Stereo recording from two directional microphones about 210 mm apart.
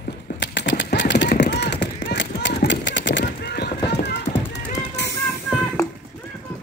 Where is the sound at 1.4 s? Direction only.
55° left (ahead or behind).